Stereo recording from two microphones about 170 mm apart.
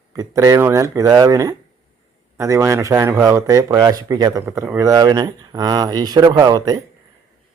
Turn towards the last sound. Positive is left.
turn(degrees=-20)  # may be behind; listen again after turning